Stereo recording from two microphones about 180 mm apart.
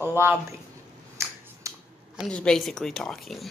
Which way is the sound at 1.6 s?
15° right (ahead or behind).